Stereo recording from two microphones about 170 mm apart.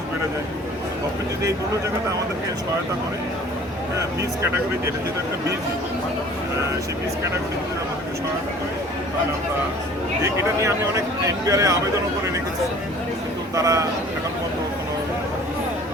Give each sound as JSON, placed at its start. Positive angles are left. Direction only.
{"t": 10.2, "sound": "speech", "side_deg": -20}
{"t": 13.6, "sound": "speech", "side_deg": -20}